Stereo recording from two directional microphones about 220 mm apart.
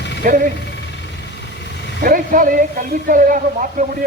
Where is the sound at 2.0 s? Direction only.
40° right (ahead or behind).